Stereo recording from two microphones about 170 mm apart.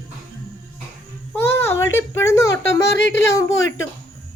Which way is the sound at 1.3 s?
15° left (ahead or behind).